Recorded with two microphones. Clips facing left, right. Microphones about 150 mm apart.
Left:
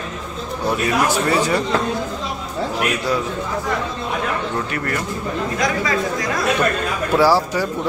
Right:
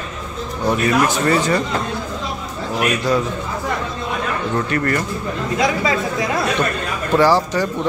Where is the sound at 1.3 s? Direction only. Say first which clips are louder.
Right 1 dB; 10° left (ahead or behind).